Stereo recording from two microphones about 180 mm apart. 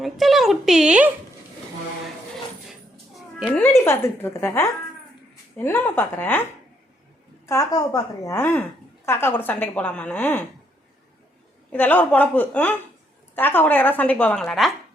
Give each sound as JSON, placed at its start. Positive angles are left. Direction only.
{"t": 0.0, "sound": "speech", "side_deg": 0}
{"t": 3.2, "sound": "cat", "side_deg": 0}
{"t": 3.7, "sound": "a woman's voice", "side_deg": 15}
{"t": 11.7, "sound": "a woman's voice", "side_deg": 10}